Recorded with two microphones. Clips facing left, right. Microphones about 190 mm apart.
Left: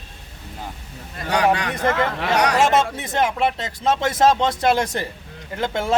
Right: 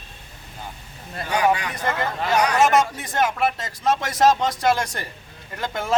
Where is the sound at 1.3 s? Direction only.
75° left (ahead or behind).